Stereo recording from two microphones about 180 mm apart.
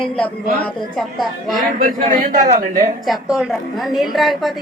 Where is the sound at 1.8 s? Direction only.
50° right (ahead or behind).